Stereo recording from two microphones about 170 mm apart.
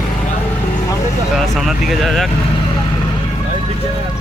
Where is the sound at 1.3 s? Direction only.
Centre (ahead or behind).